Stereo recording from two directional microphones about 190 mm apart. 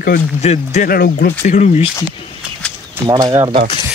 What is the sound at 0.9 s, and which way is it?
Speech, 50° left (ahead or behind).